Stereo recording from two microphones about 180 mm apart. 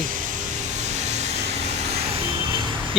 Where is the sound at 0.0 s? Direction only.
45° right (ahead or behind).